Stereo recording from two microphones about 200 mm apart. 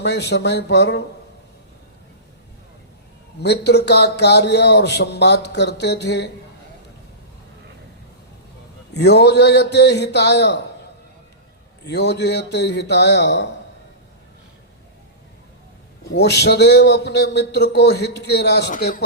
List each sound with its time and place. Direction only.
0.0 s speech: 60° left (ahead or behind)
3.4 s speech: 55° left (ahead or behind)
8.9 s speech: 55° left (ahead or behind)
11.9 s speech: 60° left (ahead or behind)
16.0 s speech: 55° left (ahead or behind)